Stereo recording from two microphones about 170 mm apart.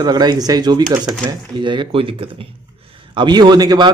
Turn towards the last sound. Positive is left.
turn(degrees=-25)  # may be behind; listen again after turning